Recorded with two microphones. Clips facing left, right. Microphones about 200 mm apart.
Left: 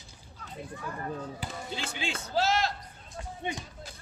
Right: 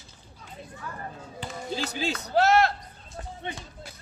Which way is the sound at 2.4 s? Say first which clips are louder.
Right 7 dB; 60° right (ahead or behind).